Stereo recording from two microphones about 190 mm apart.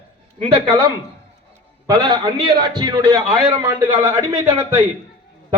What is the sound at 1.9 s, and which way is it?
A man's voice, 25° right (ahead or behind).